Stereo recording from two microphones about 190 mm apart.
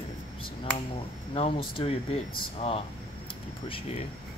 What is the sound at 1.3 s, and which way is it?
Speech, 30° left (ahead or behind).